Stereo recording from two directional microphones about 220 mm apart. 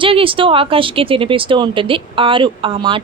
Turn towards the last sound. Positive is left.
turn(degrees=-20)  # may be behind; listen again after turning